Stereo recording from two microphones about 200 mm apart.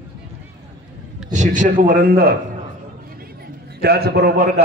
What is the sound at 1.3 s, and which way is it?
A man's voice, 40° right (ahead or behind).